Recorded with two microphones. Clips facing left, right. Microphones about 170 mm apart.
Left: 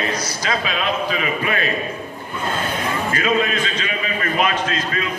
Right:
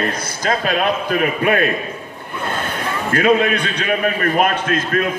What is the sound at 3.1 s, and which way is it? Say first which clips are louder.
A man's voice: right 7 dB; 55° right (ahead or behind).